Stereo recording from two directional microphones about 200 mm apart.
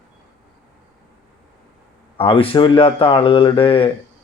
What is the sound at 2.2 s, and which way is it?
Speech, 25° left (ahead or behind).